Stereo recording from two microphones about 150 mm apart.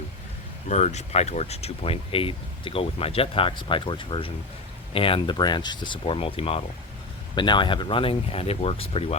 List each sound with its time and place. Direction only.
0.7 s speech: 50° left (ahead or behind)